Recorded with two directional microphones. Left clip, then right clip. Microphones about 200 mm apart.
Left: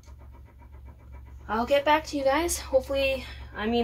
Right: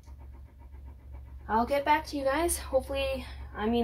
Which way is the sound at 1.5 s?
5° left (ahead or behind).